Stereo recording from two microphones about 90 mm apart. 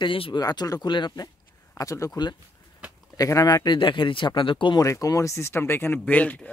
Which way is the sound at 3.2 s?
40° left (ahead or behind).